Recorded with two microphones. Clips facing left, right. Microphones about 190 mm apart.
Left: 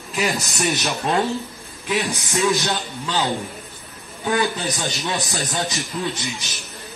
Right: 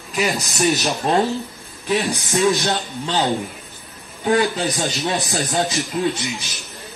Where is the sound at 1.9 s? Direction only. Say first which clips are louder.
Right 3 dB; 35° right (ahead or behind).